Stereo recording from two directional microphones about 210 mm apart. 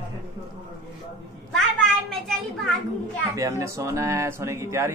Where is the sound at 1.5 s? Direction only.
Centre (ahead or behind).